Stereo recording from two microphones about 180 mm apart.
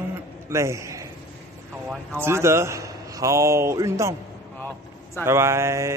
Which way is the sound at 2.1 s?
15° right (ahead or behind).